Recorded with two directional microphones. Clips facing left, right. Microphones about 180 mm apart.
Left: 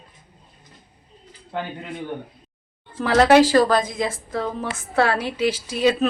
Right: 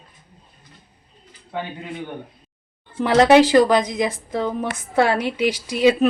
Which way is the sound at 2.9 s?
15° right (ahead or behind).